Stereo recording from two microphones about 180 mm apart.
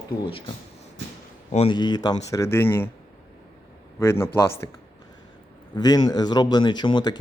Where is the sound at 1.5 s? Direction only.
30° left (ahead or behind); by 2.9 s 10° left (ahead or behind).